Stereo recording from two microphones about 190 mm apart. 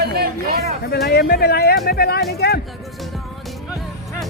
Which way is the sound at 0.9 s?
55° left (ahead or behind).